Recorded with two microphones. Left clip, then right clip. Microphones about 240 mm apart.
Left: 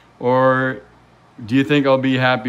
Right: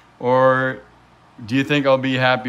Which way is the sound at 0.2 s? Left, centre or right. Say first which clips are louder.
Even; centre.